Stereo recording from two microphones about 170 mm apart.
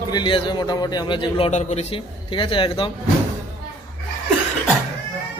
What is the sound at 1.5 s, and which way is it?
A man's voice, 40° left (ahead or behind).